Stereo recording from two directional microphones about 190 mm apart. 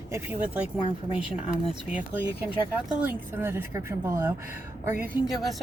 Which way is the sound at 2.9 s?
10° right (ahead or behind).